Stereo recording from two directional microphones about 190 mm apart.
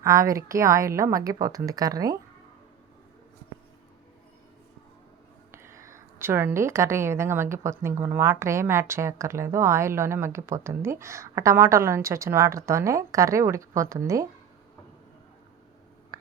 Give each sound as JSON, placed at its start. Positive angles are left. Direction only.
{"t": 0.0, "sound": "a woman's voice", "side_deg": -15}
{"t": 5.5, "sound": "a woman's voice", "side_deg": -15}
{"t": 16.1, "sound": "a sound", "side_deg": -15}